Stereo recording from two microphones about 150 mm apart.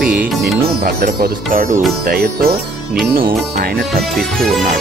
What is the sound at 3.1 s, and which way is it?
Speech, 75° right (ahead or behind).